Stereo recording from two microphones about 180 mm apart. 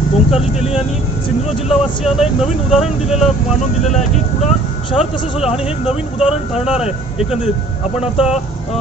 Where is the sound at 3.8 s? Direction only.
40° left (ahead or behind).